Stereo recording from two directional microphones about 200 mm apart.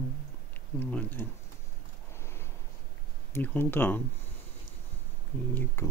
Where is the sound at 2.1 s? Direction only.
10° left (ahead or behind).